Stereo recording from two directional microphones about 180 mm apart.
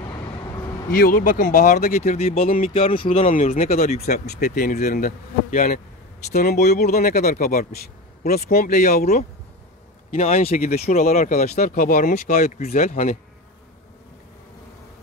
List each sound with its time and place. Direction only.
0.0 s vehicle: 20° left (ahead or behind)
0.9 s speech: 55° left (ahead or behind); by 3.3 s 30° left (ahead or behind)
3.3 s speech: 45° left (ahead or behind)
4.0 s speech: 55° left (ahead or behind)
10.1 s speech: 35° left (ahead or behind)